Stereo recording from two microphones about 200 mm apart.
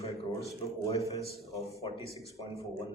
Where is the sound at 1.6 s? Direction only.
Centre (ahead or behind).